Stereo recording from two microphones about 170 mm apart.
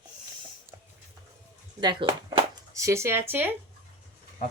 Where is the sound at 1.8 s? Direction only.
25° right (ahead or behind).